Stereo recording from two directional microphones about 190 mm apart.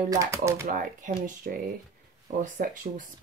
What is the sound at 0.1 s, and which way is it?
Speech, 15° right (ahead or behind).